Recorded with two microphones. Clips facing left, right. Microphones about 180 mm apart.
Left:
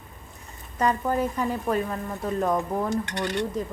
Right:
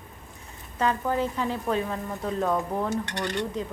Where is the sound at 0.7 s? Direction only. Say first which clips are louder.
Left 1 dB; 10° left (ahead or behind).